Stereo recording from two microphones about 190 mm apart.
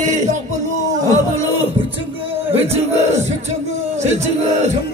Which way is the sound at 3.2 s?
35° right (ahead or behind).